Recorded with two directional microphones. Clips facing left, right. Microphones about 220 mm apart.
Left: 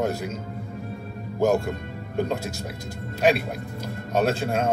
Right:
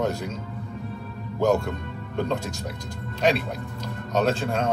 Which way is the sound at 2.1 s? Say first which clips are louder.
Left 1 dB; 10° left (ahead or behind).